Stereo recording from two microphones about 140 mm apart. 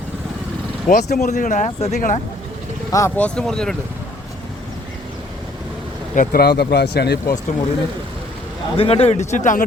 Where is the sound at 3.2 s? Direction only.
5° left (ahead or behind).